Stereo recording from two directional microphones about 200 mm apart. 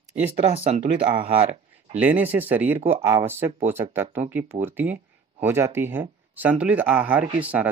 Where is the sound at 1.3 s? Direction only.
30° right (ahead or behind).